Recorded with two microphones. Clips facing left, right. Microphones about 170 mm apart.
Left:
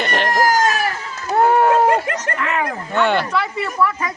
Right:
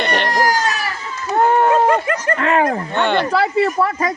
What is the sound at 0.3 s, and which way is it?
Chicken, 50° left (ahead or behind).